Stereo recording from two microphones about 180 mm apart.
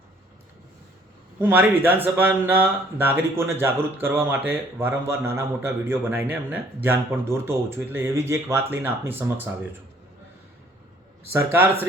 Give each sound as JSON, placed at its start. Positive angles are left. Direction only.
{"t": 1.4, "sound": "speech", "side_deg": -10}
{"t": 11.5, "sound": "speech", "side_deg": -10}